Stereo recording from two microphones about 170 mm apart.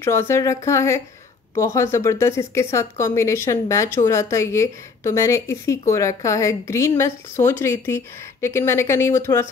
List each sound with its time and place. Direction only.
0.0 s speech: 15° left (ahead or behind)